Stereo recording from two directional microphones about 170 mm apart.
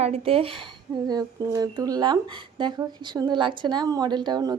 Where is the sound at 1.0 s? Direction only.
20° right (ahead or behind).